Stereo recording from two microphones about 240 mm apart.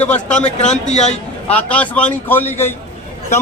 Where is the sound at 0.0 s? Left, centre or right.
Centre.